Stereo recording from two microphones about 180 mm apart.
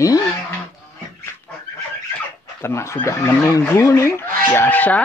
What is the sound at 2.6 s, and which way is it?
Speech, 15° left (ahead or behind).